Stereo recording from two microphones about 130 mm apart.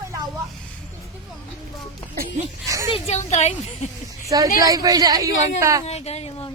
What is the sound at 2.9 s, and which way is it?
Speech, 55° left (ahead or behind).